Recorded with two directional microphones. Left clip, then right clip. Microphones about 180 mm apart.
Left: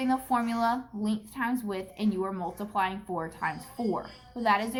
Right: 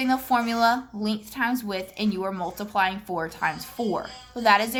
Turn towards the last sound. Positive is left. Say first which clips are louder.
# right 6 dB
turn(degrees=-25)  # may be behind; listen again after turning